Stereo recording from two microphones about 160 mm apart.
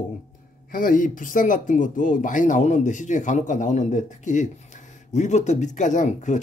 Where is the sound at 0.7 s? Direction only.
60° left (ahead or behind).